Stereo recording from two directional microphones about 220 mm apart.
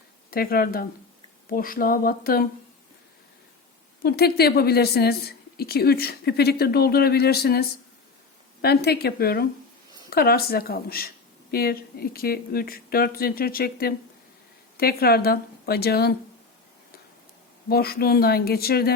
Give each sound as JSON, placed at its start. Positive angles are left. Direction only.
{"t": 0.3, "sound": "a woman's voice", "side_deg": 40}
{"t": 4.0, "sound": "a woman's voice", "side_deg": 45}
{"t": 17.7, "sound": "a woman's voice", "side_deg": 45}